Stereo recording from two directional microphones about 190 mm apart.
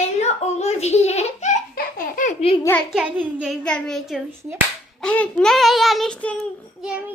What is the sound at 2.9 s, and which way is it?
A child's voice, 5° right (ahead or behind).